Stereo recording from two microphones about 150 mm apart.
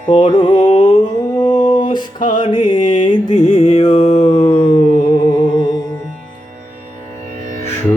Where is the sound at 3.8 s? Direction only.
40° left (ahead or behind).